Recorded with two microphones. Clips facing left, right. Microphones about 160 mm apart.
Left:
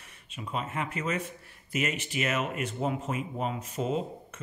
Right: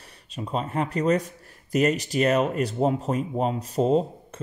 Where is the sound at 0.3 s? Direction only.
35° right (ahead or behind).